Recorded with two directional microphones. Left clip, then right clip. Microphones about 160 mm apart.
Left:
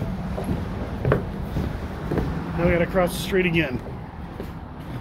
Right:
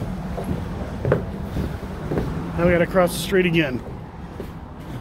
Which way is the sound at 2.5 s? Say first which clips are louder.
Right 3 dB; 40° right (ahead or behind).